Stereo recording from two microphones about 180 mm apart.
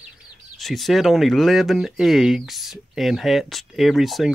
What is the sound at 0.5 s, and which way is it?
Speech, centre (ahead or behind).